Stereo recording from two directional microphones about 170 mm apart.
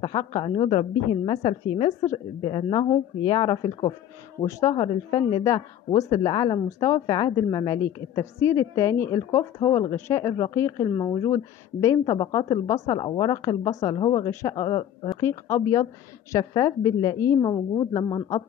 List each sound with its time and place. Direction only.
0.0 s a woman's voice: 30° left (ahead or behind)
15.1 s a woman's voice: 15° left (ahead or behind)